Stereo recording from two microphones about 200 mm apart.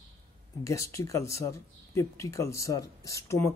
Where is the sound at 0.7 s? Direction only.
15° left (ahead or behind).